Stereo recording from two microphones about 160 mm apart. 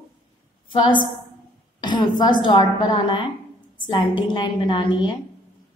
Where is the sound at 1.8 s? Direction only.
30° left (ahead or behind).